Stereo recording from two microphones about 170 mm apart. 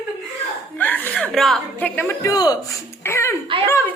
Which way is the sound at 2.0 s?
15° left (ahead or behind).